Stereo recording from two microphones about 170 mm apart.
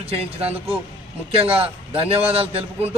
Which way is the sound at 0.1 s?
35° right (ahead or behind).